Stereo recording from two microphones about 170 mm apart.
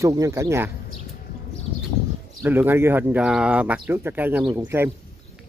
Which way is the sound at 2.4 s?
10° right (ahead or behind).